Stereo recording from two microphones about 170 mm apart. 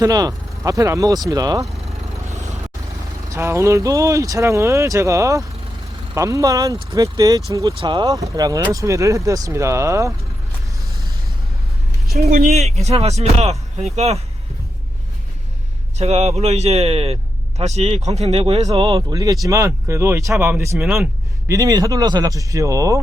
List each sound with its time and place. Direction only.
0.0 s speech: 20° right (ahead or behind)
2.3 s vehicle: 45° right (ahead or behind)
3.2 s speech: 15° right (ahead or behind)
12.3 s speech: 50° right (ahead or behind)
16.0 s speech: 40° right (ahead or behind); by 20.8 s 15° right (ahead or behind)
20.8 s speech: 5° right (ahead or behind)
21.4 s speech: 20° right (ahead or behind)